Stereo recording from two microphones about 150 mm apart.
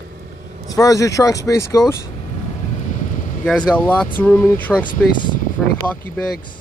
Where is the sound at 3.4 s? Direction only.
5° left (ahead or behind).